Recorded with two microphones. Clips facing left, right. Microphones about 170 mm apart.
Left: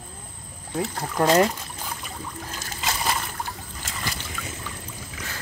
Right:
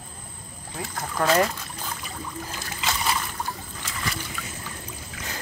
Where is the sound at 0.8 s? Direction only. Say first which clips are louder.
Left 4 dB; 20° left (ahead or behind).